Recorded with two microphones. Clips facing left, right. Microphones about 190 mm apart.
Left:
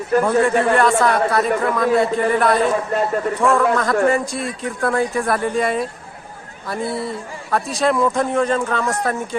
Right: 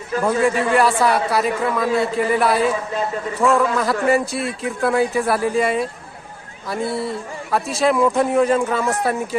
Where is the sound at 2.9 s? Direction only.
55° left (ahead or behind).